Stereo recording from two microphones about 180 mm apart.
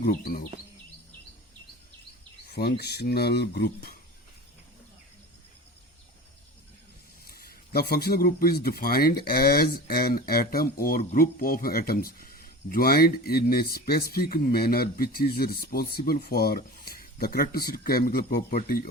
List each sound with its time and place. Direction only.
0.0 s speech: 50° left (ahead or behind)
2.5 s a man's voice: 60° left (ahead or behind)
7.3 s a man's voice: 60° left (ahead or behind)